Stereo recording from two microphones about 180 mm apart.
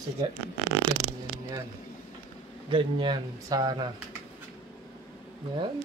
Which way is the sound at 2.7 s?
25° right (ahead or behind).